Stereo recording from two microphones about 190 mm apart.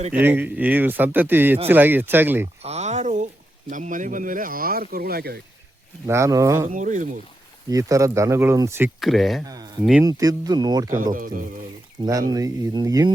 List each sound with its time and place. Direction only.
0.1 s speech: 10° right (ahead or behind)
2.6 s a sound: 35° right (ahead or behind)
3.7 s speech: 45° right (ahead or behind)
6.1 s speech: 15° right (ahead or behind)
6.7 s speech: 40° right (ahead or behind)
7.7 s speech: 15° right (ahead or behind)
9.0 s speech: centre (ahead or behind)
10.0 s speech: 20° right (ahead or behind)
11.0 s speech: 45° right (ahead or behind)
12.0 s speech: 25° right (ahead or behind)